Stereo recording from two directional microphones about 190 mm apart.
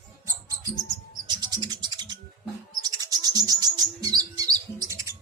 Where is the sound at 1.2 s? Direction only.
20° right (ahead or behind).